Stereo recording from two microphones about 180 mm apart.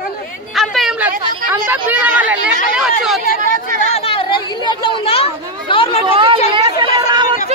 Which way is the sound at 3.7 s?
50° right (ahead or behind).